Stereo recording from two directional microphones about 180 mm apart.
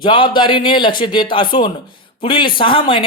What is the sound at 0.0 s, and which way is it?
Speech, 25° left (ahead or behind).